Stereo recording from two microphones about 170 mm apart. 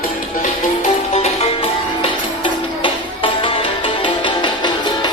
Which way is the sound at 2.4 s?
30° left (ahead or behind).